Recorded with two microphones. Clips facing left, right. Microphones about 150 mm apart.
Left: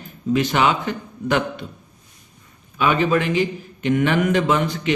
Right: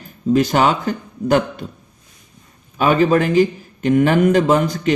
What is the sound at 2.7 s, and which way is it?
A man's voice, 40° right (ahead or behind).